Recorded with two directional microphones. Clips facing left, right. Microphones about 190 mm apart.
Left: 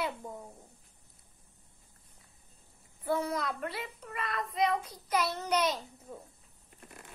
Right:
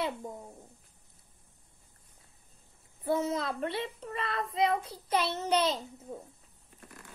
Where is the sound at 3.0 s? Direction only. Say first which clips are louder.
Right 2 dB; 20° right (ahead or behind).